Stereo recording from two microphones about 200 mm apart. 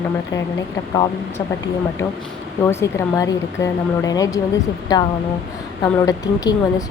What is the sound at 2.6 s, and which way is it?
A woman's voice, 15° left (ahead or behind).